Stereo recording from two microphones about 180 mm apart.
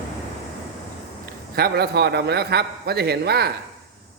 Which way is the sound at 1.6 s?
60° right (ahead or behind).